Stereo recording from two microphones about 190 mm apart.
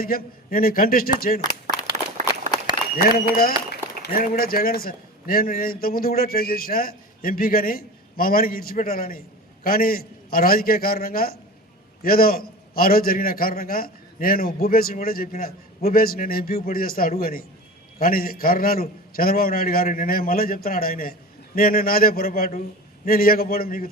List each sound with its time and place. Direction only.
0.0 s a man's voice: 50° left (ahead or behind)
1.7 s a sound: 20° left (ahead or behind)
3.0 s a man's voice: 50° left (ahead or behind)